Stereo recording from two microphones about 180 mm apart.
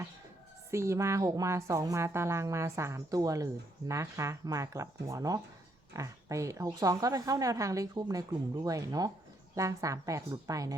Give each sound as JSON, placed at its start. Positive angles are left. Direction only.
{"t": 0.7, "sound": "a woman's voice", "side_deg": -15}